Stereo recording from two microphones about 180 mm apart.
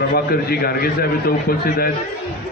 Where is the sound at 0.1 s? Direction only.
55° left (ahead or behind).